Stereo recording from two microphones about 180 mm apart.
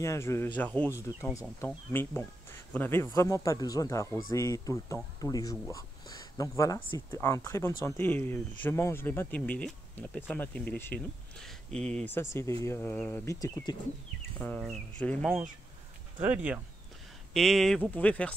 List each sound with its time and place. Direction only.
0.0 s speech: 15° left (ahead or behind)
14.4 s speech: 5° left (ahead or behind)
16.2 s speech: 10° right (ahead or behind)
17.3 s speech: centre (ahead or behind)